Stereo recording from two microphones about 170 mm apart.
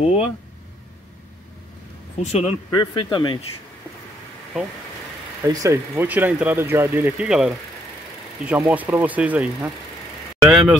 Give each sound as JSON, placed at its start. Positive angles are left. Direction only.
{"t": 0.0, "sound": "speech", "side_deg": 35}
{"t": 2.1, "sound": "speech", "side_deg": 40}
{"t": 2.7, "sound": "speech", "side_deg": 25}
{"t": 5.4, "sound": "speech", "side_deg": -20}